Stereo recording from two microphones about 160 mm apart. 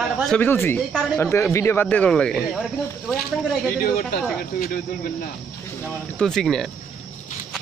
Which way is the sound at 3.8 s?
65° left (ahead or behind).